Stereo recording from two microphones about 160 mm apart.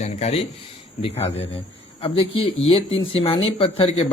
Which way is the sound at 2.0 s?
35° left (ahead or behind).